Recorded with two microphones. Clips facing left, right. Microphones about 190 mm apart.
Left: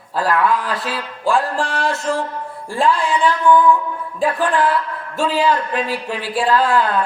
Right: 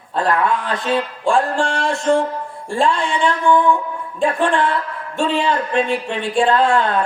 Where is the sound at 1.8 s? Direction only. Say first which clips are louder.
Right 4 dB; centre (ahead or behind).